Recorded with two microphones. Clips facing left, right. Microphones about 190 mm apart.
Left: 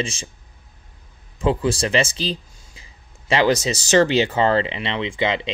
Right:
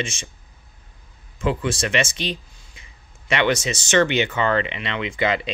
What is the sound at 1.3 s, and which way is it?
Speech, 35° left (ahead or behind).